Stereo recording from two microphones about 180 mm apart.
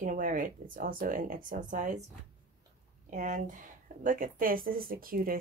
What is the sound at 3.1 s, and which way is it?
Speech, 45° right (ahead or behind).